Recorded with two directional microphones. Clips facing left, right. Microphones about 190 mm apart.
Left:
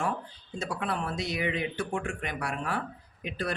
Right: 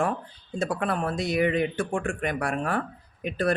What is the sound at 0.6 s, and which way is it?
Speech, 50° right (ahead or behind).